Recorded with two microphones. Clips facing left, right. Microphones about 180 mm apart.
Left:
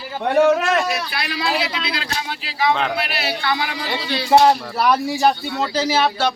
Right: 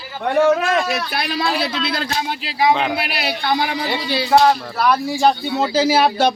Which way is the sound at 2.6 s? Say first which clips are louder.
Right 2 dB; 10° right (ahead or behind).